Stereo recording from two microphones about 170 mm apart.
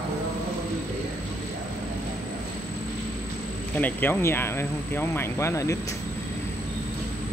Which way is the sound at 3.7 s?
10° left (ahead or behind).